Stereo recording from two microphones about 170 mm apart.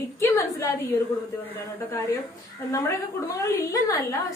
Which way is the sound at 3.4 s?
20° left (ahead or behind).